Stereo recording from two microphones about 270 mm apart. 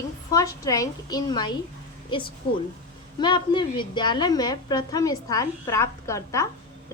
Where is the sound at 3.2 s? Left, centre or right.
Centre.